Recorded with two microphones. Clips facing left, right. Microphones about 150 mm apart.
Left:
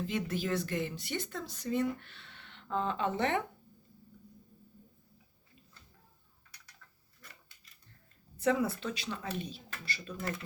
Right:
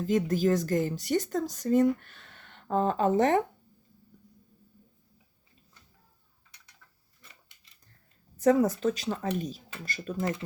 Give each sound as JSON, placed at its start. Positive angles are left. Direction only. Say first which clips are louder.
{"t": 0.0, "sound": "a woman's voice", "louder": "right 9 dB", "side_deg": -40}
{"t": 8.4, "sound": "a woman's voice", "louder": "right 7 dB", "side_deg": -40}